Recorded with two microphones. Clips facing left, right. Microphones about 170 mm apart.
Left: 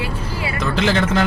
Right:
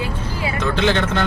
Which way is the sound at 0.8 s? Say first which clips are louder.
Left 1 dB; 5° left (ahead or behind).